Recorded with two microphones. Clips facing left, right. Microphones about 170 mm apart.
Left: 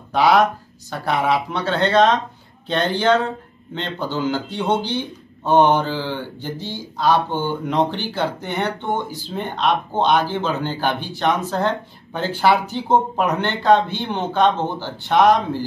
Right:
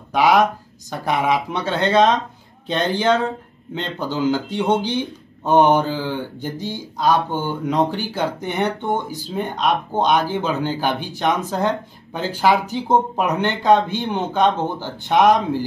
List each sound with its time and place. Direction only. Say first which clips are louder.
0.1 s speech: even; 15° right (ahead or behind)